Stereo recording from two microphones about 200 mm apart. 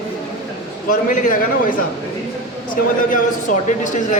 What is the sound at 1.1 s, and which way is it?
Speech, 40° left (ahead or behind).